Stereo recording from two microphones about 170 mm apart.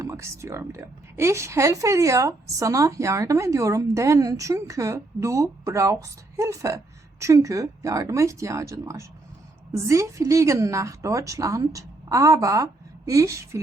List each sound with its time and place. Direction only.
0.0 s a woman's voice: 15° right (ahead or behind)